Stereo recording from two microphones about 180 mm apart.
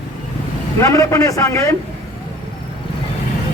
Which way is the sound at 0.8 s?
15° left (ahead or behind).